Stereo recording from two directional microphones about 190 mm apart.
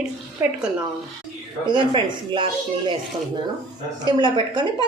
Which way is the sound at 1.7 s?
25° right (ahead or behind).